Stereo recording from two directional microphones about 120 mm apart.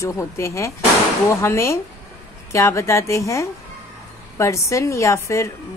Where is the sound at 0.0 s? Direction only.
25° left (ahead or behind).